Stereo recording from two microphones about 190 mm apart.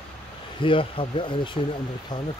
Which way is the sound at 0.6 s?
25° left (ahead or behind).